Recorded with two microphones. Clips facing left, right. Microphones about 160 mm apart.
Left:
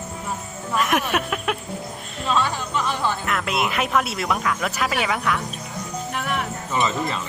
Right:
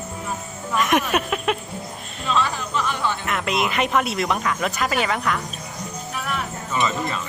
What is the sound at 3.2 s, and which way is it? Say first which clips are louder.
Speech: right 1 dB; centre (ahead or behind).